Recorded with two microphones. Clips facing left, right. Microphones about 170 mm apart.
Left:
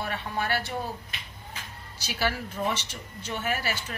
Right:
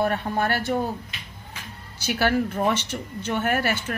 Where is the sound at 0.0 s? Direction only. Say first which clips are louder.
Right 8 dB; 50° right (ahead or behind).